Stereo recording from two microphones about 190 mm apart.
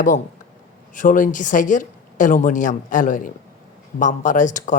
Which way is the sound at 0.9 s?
45° left (ahead or behind).